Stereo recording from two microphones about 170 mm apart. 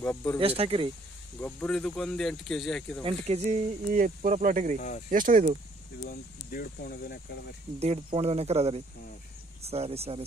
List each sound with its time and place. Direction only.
0.0 s speech: 10° left (ahead or behind)
0.4 s speech: 35° right (ahead or behind)
1.4 s speech: 5° left (ahead or behind)
3.0 s speech: 35° right (ahead or behind)
3.9 s speech: 50° right (ahead or behind)
4.7 s speech: 50° left (ahead or behind)
5.1 s speech: 50° right (ahead or behind)
6.0 s speech: 60° left (ahead or behind)
7.8 s speech: 40° right (ahead or behind)